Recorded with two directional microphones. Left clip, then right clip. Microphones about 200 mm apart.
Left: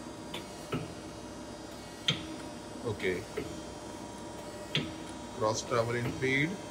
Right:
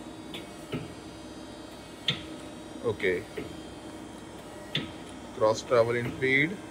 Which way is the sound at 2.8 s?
15° left (ahead or behind).